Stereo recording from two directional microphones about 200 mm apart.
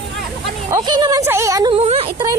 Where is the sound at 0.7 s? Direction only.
20° right (ahead or behind).